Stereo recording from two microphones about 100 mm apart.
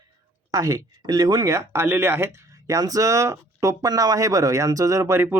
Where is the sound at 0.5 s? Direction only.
35° right (ahead or behind).